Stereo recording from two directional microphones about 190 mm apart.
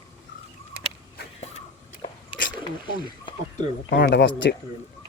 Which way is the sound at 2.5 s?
25° left (ahead or behind).